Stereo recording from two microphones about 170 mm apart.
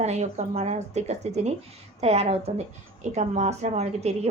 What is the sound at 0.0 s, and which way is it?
Speech, 40° right (ahead or behind).